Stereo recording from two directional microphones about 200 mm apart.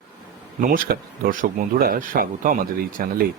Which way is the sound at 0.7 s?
45° right (ahead or behind).